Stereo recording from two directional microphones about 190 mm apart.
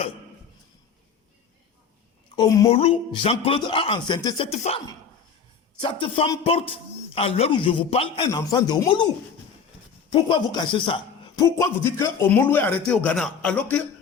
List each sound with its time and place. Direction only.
2.3 s a man's voice: 25° left (ahead or behind)
5.8 s a man's voice: 25° left (ahead or behind)
8.3 s a man's voice: 20° left (ahead or behind)
10.1 s a man's voice: 25° left (ahead or behind); by 13.8 s 5° left (ahead or behind)